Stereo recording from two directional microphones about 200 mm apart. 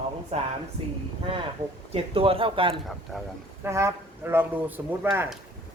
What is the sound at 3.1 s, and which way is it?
Speech, centre (ahead or behind).